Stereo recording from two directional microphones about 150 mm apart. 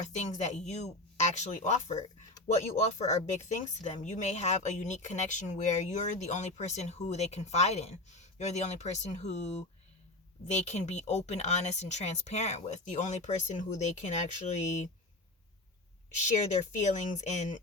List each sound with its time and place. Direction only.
0.2 s speech: 50° left (ahead or behind)
10.4 s speech: 50° left (ahead or behind)
16.5 s speech: 55° left (ahead or behind)